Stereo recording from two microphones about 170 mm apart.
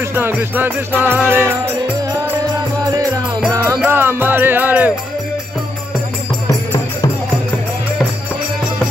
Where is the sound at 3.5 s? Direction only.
20° right (ahead or behind).